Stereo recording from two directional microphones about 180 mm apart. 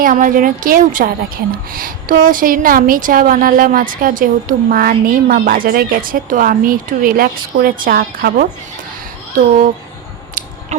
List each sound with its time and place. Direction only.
0.0 s a woman's voice: 50° right (ahead or behind)